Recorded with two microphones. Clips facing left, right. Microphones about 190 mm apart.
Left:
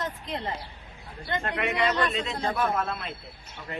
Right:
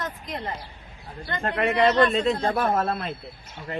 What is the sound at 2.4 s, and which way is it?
Speech, 50° right (ahead or behind).